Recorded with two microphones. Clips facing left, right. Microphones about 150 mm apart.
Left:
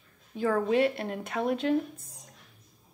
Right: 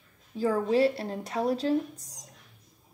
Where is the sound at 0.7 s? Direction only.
35° right (ahead or behind).